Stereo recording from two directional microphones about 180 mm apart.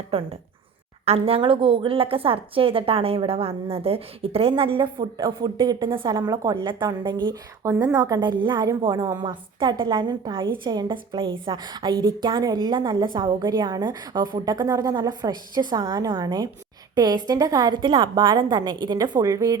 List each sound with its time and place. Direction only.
0.1 s a woman's voice: 35° right (ahead or behind); by 19.5 s 20° right (ahead or behind)